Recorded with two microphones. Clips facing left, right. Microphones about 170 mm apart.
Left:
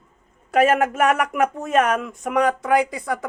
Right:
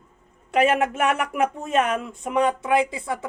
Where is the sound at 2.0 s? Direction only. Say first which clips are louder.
Left 2 dB; 30° right (ahead or behind).